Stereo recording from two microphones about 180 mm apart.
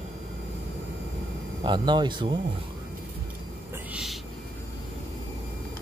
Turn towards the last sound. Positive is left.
turn(degrees=-5)  # may be behind; listen again after turning